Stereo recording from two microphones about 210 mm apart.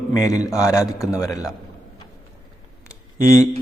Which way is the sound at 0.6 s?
15° left (ahead or behind).